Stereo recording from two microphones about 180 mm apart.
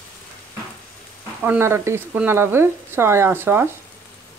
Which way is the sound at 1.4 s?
10° right (ahead or behind).